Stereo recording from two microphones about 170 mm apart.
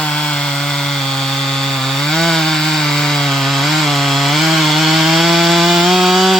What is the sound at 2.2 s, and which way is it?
Chainsaw, 5° left (ahead or behind).